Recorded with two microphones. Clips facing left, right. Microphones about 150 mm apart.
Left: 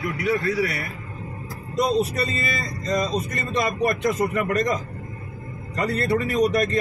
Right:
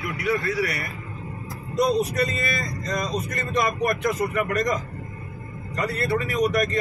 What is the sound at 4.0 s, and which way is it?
Speech, 30° left (ahead or behind).